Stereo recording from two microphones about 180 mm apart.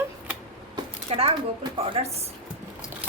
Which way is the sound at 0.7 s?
30° right (ahead or behind).